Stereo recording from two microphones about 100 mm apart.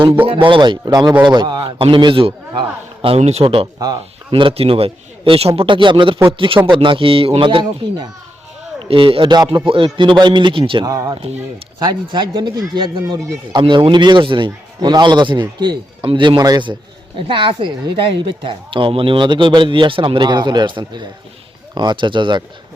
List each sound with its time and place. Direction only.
0.4 s a woman's voice: 55° right (ahead or behind)
0.9 s speech: 40° right (ahead or behind)
1.2 s a man's voice: 50° right (ahead or behind)
2.6 s a man's voice: 70° right (ahead or behind); by 8.0 s 50° right (ahead or behind)
8.9 s a woman's voice: 65° right (ahead or behind)
10.8 s speech: 40° right (ahead or behind)
11.8 s a man's voice: 50° right (ahead or behind)
12.3 s speech: 40° right (ahead or behind)
13.5 s a man's voice: 55° right (ahead or behind)
16.4 s a man's voice: 45° right (ahead or behind)
17.2 s a woman's voice: 60° right (ahead or behind)